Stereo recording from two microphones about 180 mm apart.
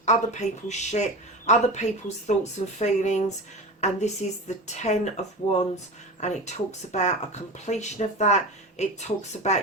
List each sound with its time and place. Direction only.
0.0 s speech: 40° left (ahead or behind)